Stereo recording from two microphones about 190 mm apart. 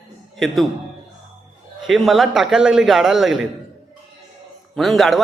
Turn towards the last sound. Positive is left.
turn(degrees=0)  # may be behind; listen again after turning